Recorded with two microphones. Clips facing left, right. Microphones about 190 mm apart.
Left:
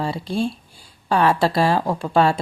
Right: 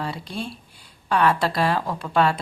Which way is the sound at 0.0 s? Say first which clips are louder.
Left 7 dB; 30° left (ahead or behind).